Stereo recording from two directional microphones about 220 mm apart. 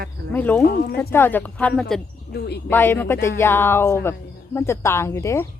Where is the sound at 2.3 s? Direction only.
50° left (ahead or behind).